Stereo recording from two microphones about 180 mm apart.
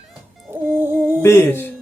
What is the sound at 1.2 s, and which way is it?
Speech, 15° left (ahead or behind).